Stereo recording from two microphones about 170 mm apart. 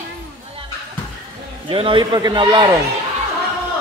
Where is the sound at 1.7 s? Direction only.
30° right (ahead or behind).